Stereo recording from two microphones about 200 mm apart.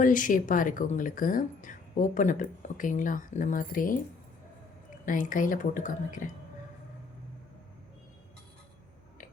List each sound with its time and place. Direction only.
0.0 s speech: 40° left (ahead or behind)
5.0 s speech: 40° left (ahead or behind)